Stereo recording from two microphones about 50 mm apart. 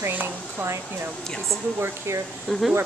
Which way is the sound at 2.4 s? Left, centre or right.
Centre.